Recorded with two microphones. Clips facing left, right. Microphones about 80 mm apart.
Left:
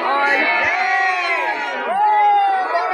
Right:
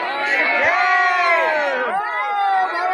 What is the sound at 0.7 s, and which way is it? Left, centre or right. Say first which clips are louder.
Crowd: right 2 dB; right.